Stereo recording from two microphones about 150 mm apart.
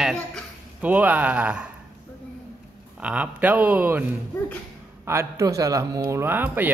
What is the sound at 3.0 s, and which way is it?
A man's voice, 10° right (ahead or behind).